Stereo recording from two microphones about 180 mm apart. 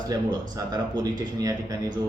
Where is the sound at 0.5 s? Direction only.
20° right (ahead or behind).